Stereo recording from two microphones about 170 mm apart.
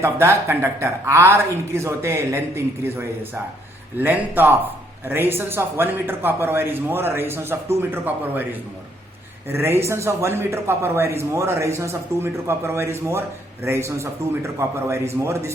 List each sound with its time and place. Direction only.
0.0 s a man's voice: 15° right (ahead or behind)
9.5 s a man's voice: 15° right (ahead or behind)